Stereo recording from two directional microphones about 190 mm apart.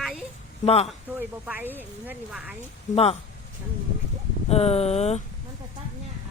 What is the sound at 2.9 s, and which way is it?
Speech, 30° left (ahead or behind).